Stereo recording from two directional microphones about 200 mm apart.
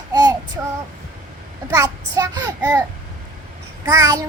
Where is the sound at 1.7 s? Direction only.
20° right (ahead or behind).